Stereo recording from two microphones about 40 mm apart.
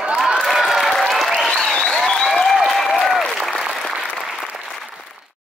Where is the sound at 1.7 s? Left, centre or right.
Left.